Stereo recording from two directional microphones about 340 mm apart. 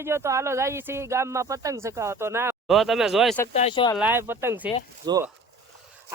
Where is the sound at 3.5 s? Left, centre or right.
Centre.